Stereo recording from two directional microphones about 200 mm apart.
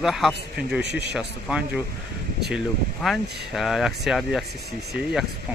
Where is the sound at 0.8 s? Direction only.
55° right (ahead or behind).